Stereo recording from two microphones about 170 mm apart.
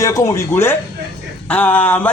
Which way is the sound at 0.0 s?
20° left (ahead or behind).